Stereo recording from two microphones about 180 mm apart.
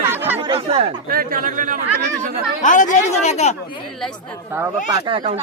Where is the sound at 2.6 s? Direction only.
45° left (ahead or behind).